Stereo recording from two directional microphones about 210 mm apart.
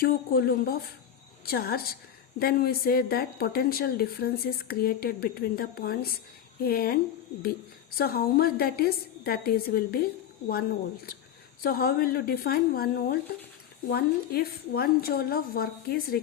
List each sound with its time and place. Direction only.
0.0 s speech: 50° left (ahead or behind)
11.6 s speech: 45° left (ahead or behind)